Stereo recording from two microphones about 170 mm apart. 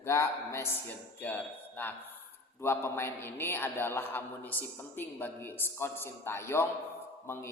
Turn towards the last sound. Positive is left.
turn(degrees=15)  # may be behind; listen again after turning